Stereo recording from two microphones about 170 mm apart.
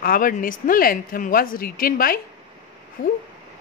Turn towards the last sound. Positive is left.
turn(degrees=50)  # may be behind; listen again after turning